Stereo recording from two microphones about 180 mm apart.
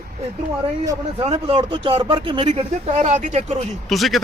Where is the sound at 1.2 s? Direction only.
30° right (ahead or behind).